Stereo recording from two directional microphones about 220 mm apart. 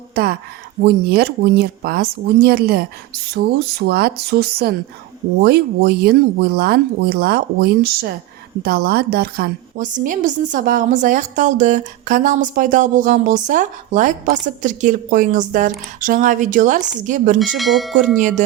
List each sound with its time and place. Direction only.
0.1 s a woman's voice: 45° right (ahead or behind)
17.6 s speech: centre (ahead or behind)